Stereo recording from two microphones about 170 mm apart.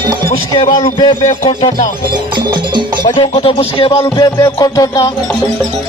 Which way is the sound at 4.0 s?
15° left (ahead or behind).